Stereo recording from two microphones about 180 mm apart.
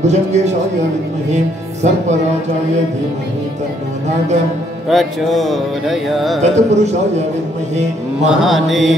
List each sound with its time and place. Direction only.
0.0 s speech: 40° right (ahead or behind)
1.3 s music: 40° right (ahead or behind)
4.8 s music: centre (ahead or behind)
6.4 s speech: 40° right (ahead or behind)
8.4 s music: centre (ahead or behind)